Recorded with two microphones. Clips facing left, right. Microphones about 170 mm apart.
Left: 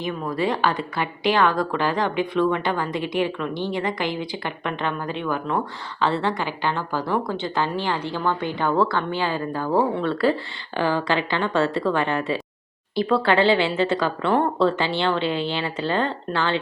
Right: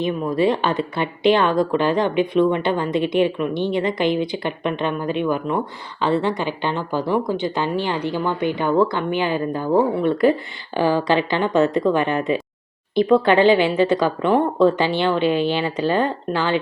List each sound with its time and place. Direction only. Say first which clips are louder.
0.0 s a woman's voice: right 6 dB; 20° right (ahead or behind)